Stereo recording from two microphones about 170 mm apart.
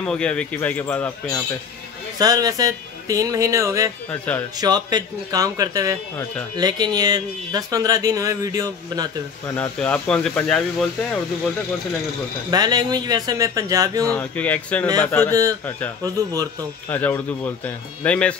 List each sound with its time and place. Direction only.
0.0 s speech: 5° left (ahead or behind)
2.1 s speech: 20° right (ahead or behind)
9.5 s speech: 5° left (ahead or behind)
12.4 s speech: 25° right (ahead or behind)
14.1 s speech: 10° left (ahead or behind)
16.9 s speech: 10° left (ahead or behind)